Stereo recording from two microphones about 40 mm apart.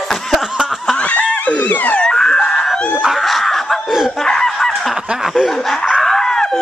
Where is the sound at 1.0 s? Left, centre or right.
Left.